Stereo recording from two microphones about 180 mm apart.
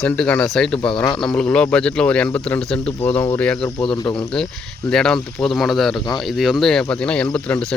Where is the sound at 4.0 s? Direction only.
25° left (ahead or behind).